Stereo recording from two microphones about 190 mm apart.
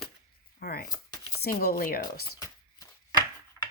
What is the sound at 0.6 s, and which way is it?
Chopping, 55° left (ahead or behind).